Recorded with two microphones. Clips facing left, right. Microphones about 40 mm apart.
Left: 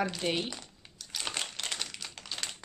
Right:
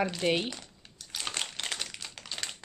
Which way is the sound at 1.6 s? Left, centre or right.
Centre.